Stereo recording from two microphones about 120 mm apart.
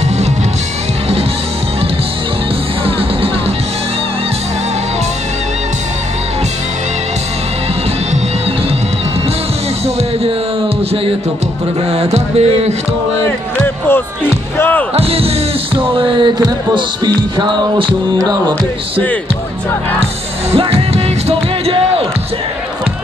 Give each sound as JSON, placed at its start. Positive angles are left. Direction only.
{"t": 11.9, "sound": "music", "side_deg": -60}
{"t": 13.6, "sound": "music", "side_deg": 20}
{"t": 15.0, "sound": "music", "side_deg": -55}
{"t": 20.5, "sound": "music", "side_deg": -55}